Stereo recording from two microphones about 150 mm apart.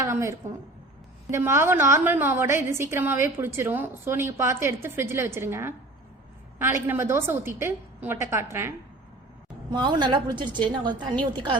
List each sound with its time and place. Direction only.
0.0 s a woman's voice: 20° right (ahead or behind)
9.6 s a woman's voice: 30° right (ahead or behind)